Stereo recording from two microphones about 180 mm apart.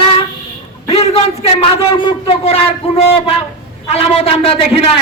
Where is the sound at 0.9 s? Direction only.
35° left (ahead or behind).